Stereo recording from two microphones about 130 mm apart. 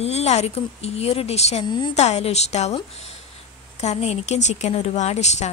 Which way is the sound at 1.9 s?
55° left (ahead or behind).